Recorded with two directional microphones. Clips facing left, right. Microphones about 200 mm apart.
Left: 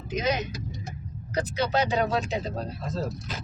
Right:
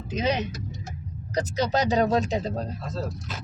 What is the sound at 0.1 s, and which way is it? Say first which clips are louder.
Speech: right 1 dB; 30° right (ahead or behind).